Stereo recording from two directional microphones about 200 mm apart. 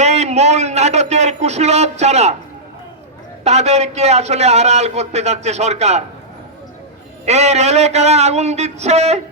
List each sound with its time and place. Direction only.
0.0 s a sound: 35° right (ahead or behind)
3.4 s a man's voice: 35° right (ahead or behind)
7.3 s a man's voice: 35° right (ahead or behind)